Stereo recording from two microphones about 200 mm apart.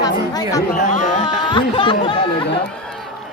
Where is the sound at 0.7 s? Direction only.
40° left (ahead or behind).